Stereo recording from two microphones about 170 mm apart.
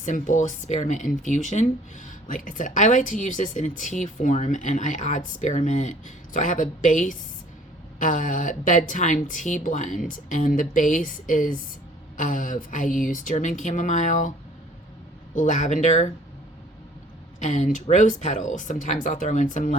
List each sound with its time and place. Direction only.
0.0 s speech: 45° left (ahead or behind)
15.4 s speech: 45° left (ahead or behind)
17.4 s speech: 40° left (ahead or behind)